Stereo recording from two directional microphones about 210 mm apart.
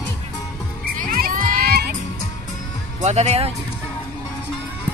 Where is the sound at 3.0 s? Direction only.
30° right (ahead or behind).